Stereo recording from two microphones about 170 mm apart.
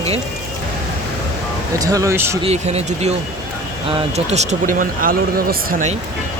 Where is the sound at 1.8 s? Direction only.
20° right (ahead or behind).